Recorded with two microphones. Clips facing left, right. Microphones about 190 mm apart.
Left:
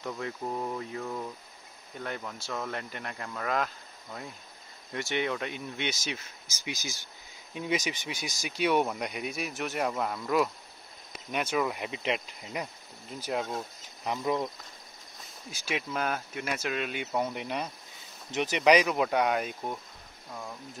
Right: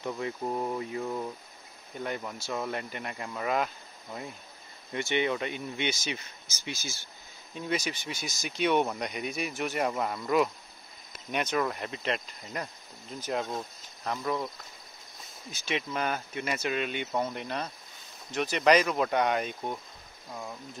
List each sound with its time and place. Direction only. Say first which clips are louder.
0.0 s speech: right 2 dB; 10° right (ahead or behind)
6.6 s speech: left 1 dB; 15° left (ahead or behind)
15.5 s speech: right 1 dB; 5° left (ahead or behind)